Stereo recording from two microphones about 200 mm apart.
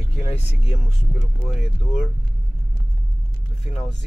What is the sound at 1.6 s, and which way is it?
Speech, 5° right (ahead or behind).